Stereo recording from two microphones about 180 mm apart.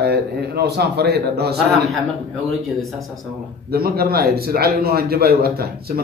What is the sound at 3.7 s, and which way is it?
A man's voice, 60° right (ahead or behind).